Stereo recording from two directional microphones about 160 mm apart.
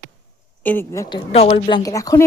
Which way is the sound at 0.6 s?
15° left (ahead or behind).